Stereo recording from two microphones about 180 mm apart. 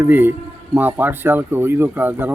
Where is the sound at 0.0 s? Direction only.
10° right (ahead or behind).